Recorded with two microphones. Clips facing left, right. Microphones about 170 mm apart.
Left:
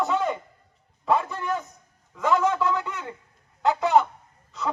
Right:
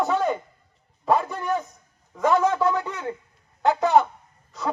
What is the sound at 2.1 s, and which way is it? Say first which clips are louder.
Speech: right 2 dB; 30° right (ahead or behind).